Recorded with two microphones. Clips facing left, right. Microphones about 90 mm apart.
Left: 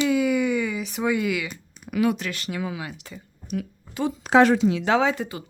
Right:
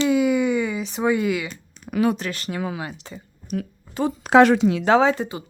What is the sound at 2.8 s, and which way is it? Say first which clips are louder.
A woman's voice: right 3 dB; 30° right (ahead or behind).